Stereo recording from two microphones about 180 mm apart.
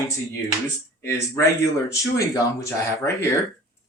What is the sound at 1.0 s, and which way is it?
Speech, 15° left (ahead or behind).